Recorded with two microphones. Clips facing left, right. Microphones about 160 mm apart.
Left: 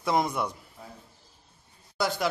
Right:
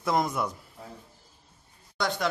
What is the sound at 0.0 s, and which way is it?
Speech, centre (ahead or behind).